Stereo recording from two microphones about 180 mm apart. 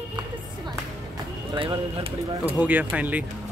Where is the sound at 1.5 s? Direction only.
30° right (ahead or behind).